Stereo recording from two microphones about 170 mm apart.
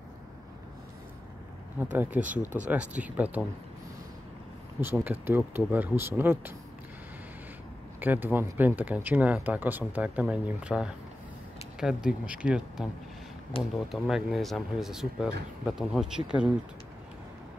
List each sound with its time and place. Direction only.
1.8 s speech: 10° right (ahead or behind)
4.7 s speech: 10° right (ahead or behind)
8.0 s speech: 10° right (ahead or behind)